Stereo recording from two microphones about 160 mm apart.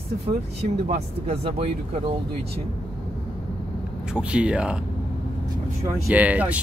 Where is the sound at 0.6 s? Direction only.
40° right (ahead or behind).